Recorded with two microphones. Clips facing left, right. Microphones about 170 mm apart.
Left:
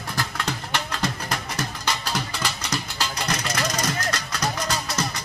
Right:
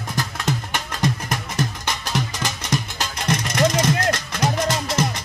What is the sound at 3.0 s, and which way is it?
Music, 25° right (ahead or behind).